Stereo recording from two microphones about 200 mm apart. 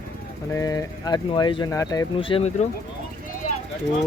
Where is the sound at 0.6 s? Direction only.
15° left (ahead or behind).